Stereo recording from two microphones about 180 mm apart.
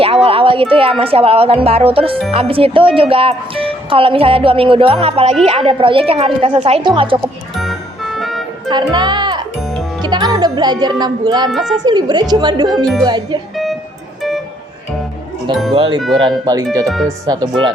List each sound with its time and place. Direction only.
0.0 s speech: 30° right (ahead or behind)
7.5 s music: centre (ahead or behind)
8.7 s speech: 25° right (ahead or behind)
12.7 s speech: centre (ahead or behind)
13.1 s speech: 25° right (ahead or behind)
15.7 s speech: 30° right (ahead or behind)
16.5 s speech: 20° right (ahead or behind)
16.8 s speech: centre (ahead or behind)